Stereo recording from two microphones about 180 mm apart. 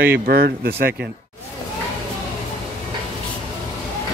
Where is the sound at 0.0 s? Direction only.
60° right (ahead or behind).